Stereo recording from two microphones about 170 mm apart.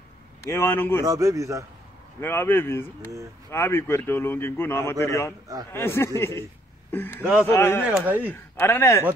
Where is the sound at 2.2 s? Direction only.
15° left (ahead or behind).